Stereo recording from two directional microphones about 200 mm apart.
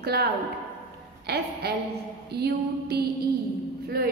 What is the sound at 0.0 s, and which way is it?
A man's voice, 50° right (ahead or behind).